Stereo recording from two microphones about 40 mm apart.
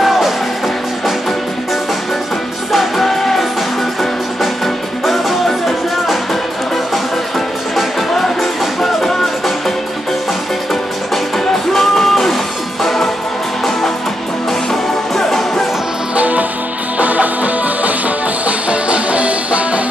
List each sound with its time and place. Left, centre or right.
2.7 s music: centre
5.0 s music: centre
8.1 s music: centre
11.3 s music: centre
14.7 s music: centre
16.2 s music: right